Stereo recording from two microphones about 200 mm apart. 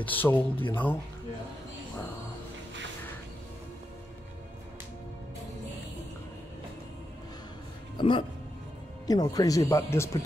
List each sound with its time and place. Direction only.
0.0 s speech: 10° left (ahead or behind)
8.0 s speech: 25° left (ahead or behind)